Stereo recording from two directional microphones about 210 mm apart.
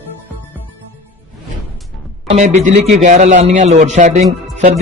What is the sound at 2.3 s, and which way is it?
A man's voice, 30° right (ahead or behind).